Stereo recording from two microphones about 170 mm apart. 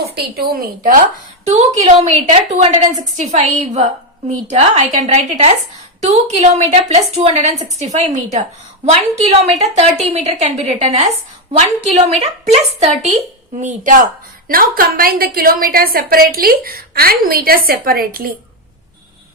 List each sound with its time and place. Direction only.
0.0 s a woman's voice: 65° right (ahead or behind)
1.5 s a woman's voice: 40° right (ahead or behind); by 18.3 s 60° right (ahead or behind)